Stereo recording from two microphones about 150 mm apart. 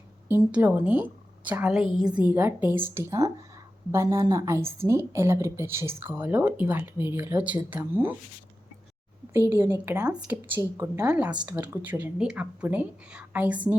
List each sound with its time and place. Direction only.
0.3 s a woman's voice: 10° right (ahead or behind)
9.5 s a woman's voice: 15° right (ahead or behind)